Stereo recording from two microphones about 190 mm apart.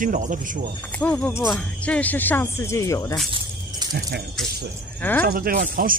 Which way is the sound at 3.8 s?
20° right (ahead or behind).